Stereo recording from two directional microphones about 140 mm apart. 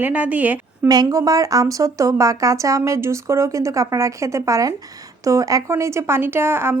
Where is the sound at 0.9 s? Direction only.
25° right (ahead or behind).